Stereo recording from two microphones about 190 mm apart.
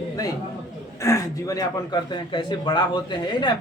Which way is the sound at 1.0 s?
15° left (ahead or behind).